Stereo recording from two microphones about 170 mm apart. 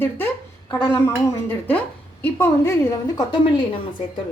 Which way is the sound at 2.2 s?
15° left (ahead or behind).